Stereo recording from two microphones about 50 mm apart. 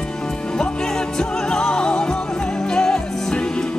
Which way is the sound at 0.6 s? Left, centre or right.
Centre.